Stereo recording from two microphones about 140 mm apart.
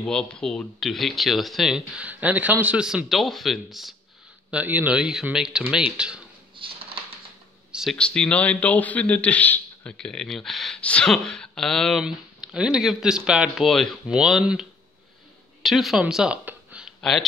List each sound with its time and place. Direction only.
0.0 s a man's voice: 5° left (ahead or behind)
4.5 s speech: 10° right (ahead or behind)
6.6 s a sound: 40° right (ahead or behind)
7.7 s a man's voice: centre (ahead or behind)